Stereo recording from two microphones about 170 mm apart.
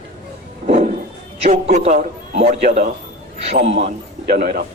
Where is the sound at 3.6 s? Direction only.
35° right (ahead or behind).